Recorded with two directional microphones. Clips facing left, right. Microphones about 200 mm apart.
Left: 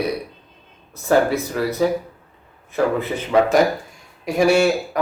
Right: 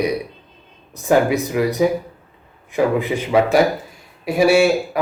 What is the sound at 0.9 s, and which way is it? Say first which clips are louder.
A man's voice: right 1 dB; 15° right (ahead or behind).